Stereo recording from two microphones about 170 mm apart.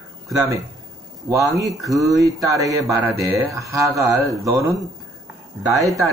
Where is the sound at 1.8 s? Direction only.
Centre (ahead or behind).